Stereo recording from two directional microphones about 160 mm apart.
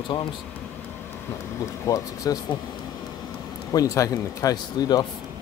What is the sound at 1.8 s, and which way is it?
Speech, 20° left (ahead or behind).